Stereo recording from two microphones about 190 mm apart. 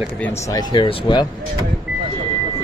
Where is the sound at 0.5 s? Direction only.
25° left (ahead or behind).